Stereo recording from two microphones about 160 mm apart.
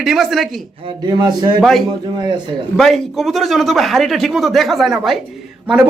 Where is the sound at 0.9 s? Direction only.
25° right (ahead or behind).